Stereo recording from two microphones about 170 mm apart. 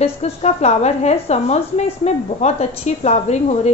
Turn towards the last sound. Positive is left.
turn(degrees=40)  # may be behind; listen again after turning